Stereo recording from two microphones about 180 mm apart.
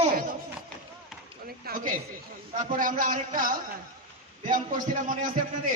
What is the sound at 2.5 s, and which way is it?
Speech, 50° right (ahead or behind).